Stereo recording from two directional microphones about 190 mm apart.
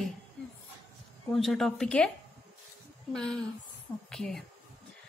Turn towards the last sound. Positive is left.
turn(degrees=5)  # may be behind; listen again after turning